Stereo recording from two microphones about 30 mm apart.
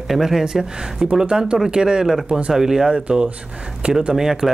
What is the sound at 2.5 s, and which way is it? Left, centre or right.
Speech, centre.